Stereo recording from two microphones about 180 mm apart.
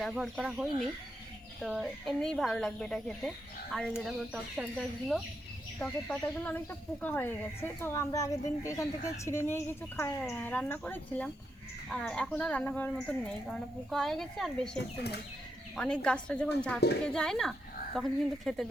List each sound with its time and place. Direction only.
0.0 s speech: centre (ahead or behind)
14.8 s speech: 65° left (ahead or behind)
15.7 s speech: 5° left (ahead or behind)